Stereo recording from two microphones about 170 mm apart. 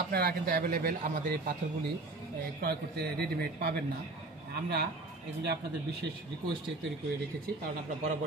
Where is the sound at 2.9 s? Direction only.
70° right (ahead or behind).